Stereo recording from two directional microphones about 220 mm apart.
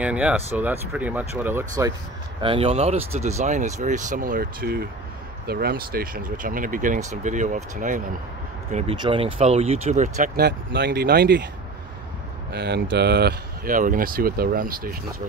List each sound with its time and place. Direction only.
0.0 s speech: 5° right (ahead or behind)
2.4 s speech: 25° right (ahead or behind)
8.7 s speech: 25° right (ahead or behind); by 11.4 s 45° right (ahead or behind)
12.5 s speech: 50° right (ahead or behind)